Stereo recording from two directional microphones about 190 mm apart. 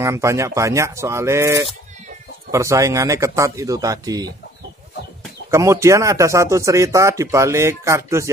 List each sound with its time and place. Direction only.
0.0 s speech: 15° right (ahead or behind)
5.5 s speech: 15° right (ahead or behind)